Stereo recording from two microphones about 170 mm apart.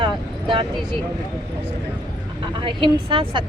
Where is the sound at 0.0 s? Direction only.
30° right (ahead or behind).